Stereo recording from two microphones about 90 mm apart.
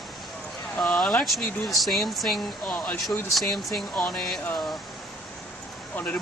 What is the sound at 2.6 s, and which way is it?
Speech, 15° left (ahead or behind).